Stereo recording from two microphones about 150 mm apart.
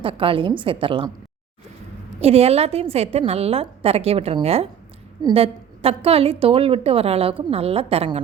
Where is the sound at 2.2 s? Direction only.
40° right (ahead or behind).